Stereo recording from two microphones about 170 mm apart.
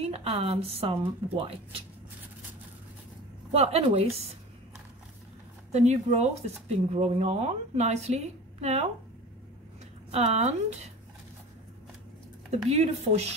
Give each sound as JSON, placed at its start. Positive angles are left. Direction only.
{"t": 0.0, "sound": "a woman's voice", "side_deg": -35}
{"t": 3.5, "sound": "a woman's voice", "side_deg": -40}
{"t": 5.7, "sound": "a woman's voice", "side_deg": -40}
{"t": 10.1, "sound": "a woman's voice", "side_deg": -40}
{"t": 12.6, "sound": "a woman's voice", "side_deg": -40}